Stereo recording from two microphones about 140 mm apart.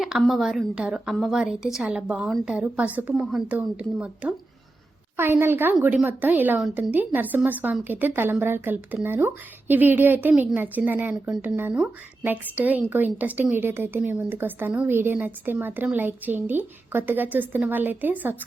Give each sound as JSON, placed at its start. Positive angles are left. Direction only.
{"t": 0.0, "sound": "a woman's voice", "side_deg": 0}